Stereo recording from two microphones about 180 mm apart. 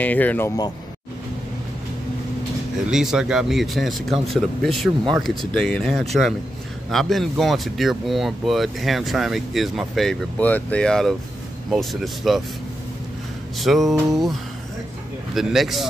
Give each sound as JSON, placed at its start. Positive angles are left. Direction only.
{"t": 0.0, "sound": "speech", "side_deg": 10}
{"t": 2.9, "sound": "speech", "side_deg": -5}
{"t": 13.6, "sound": "speech", "side_deg": 0}
{"t": 15.3, "sound": "speech", "side_deg": 0}